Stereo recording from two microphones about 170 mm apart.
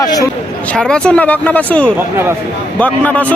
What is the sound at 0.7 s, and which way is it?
A man's voice, 5° left (ahead or behind).